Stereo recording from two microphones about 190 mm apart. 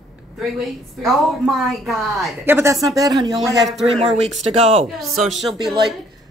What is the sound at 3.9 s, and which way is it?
Speech, 35° right (ahead or behind).